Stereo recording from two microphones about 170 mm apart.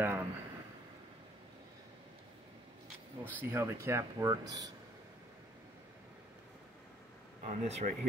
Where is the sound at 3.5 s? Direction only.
15° right (ahead or behind).